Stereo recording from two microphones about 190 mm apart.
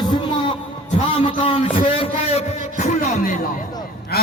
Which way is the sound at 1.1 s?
30° left (ahead or behind).